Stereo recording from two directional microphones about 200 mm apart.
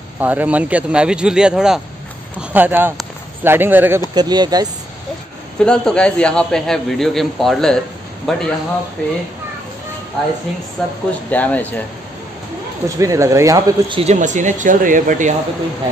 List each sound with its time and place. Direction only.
0.2 s a man's voice: 10° right (ahead or behind)
4.1 s speech: 20° right (ahead or behind)
5.6 s a man's voice: 5° left (ahead or behind)
11.1 s speech: 10° left (ahead or behind)
12.8 s speech: 15° right (ahead or behind)
14.1 s speech: 40° right (ahead or behind)